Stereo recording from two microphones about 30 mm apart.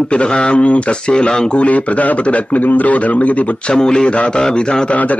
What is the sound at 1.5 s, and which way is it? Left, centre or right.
A man's voice, left.